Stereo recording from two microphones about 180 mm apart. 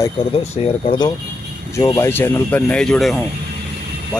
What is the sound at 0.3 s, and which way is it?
Speech, 30° left (ahead or behind).